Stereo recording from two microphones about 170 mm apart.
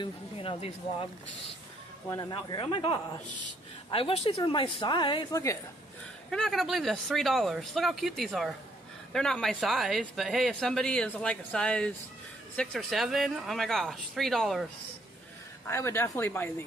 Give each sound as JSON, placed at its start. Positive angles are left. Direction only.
{"t": 0.0, "sound": "speech", "side_deg": 30}
{"t": 2.0, "sound": "speech", "side_deg": 20}
{"t": 2.3, "sound": "speech", "side_deg": 30}
{"t": 6.3, "sound": "speech", "side_deg": 0}
{"t": 15.6, "sound": "speech", "side_deg": 15}